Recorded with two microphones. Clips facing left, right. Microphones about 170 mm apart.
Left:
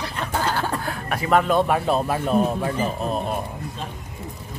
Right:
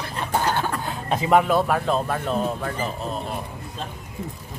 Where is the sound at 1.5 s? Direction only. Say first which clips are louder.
Left 1 dB; centre (ahead or behind).